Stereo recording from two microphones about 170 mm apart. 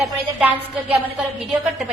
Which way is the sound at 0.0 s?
5° right (ahead or behind).